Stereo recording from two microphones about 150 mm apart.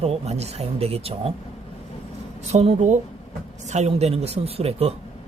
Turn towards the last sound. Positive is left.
turn(degrees=-45)  # may be behind; listen again after turning